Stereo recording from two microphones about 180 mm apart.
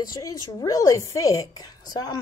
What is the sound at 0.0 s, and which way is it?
A woman's voice, 20° left (ahead or behind).